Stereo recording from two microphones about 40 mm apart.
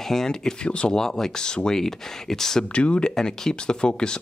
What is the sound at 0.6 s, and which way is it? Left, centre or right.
Speech, left.